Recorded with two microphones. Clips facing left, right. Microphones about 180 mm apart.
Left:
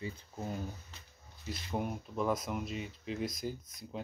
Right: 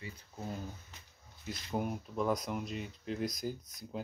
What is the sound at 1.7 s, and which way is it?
Speech, centre (ahead or behind).